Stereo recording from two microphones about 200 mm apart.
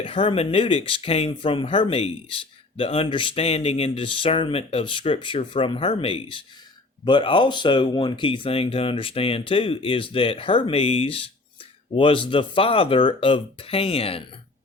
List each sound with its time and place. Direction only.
0.0 s speech: 25° left (ahead or behind)